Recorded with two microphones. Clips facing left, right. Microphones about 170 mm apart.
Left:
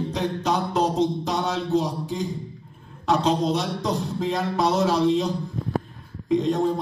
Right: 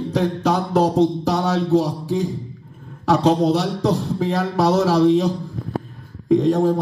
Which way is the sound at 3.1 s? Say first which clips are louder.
Right 5 dB; 70° right (ahead or behind).